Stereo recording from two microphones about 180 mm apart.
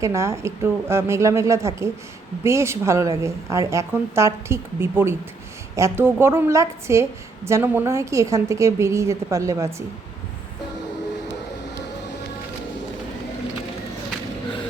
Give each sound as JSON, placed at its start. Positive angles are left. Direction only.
{"t": 0.0, "sound": "a woman's voice", "side_deg": -15}